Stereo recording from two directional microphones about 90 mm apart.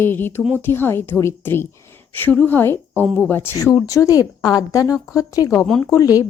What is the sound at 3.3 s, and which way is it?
Speech, 25° left (ahead or behind).